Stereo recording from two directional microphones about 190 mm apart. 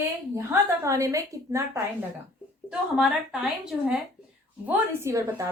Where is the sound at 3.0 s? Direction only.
5° right (ahead or behind).